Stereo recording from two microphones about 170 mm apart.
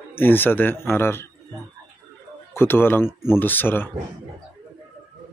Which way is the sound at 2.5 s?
15° left (ahead or behind).